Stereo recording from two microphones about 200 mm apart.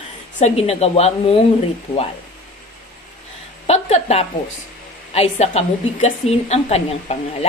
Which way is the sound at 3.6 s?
30° left (ahead or behind).